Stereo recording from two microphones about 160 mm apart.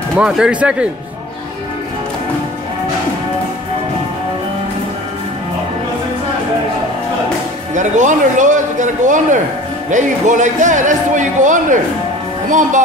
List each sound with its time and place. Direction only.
0.1 s speech: centre (ahead or behind)
7.7 s speech: 50° right (ahead or behind)